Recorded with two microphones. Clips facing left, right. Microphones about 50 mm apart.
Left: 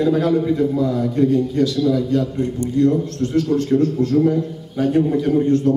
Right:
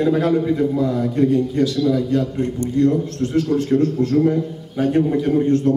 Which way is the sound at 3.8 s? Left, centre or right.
Right.